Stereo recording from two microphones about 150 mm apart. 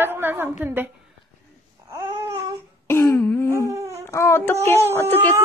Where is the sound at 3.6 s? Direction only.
20° right (ahead or behind).